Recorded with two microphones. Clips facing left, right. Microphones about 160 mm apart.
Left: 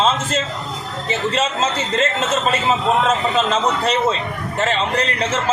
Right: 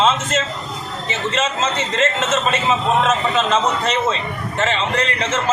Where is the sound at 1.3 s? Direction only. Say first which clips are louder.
Right 1 dB; 35° left (ahead or behind).